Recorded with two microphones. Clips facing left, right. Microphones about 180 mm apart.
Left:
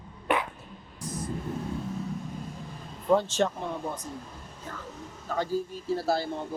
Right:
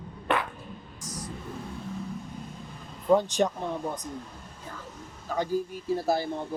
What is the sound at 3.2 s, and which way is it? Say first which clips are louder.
Speech: right 1 dB; 15° right (ahead or behind).